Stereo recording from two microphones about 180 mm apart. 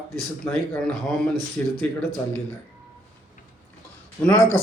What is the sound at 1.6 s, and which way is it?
Speech, 10° left (ahead or behind).